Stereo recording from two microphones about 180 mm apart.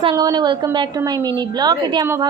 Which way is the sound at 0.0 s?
20° right (ahead or behind).